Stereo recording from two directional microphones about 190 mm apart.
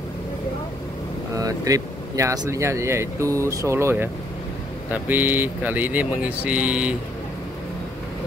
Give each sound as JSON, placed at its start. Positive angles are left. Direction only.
{"t": 1.3, "sound": "speech", "side_deg": -20}